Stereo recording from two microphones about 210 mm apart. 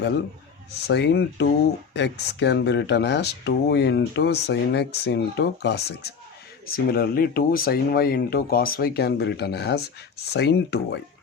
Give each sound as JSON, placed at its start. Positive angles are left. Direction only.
{"t": 0.9, "sound": "speech", "side_deg": 50}